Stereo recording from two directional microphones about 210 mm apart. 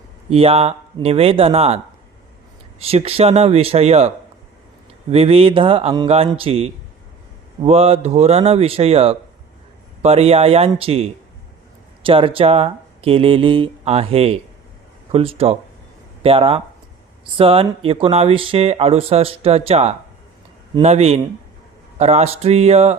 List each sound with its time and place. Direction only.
0.3 s speech: 30° right (ahead or behind)
5.1 s speech: 30° right (ahead or behind)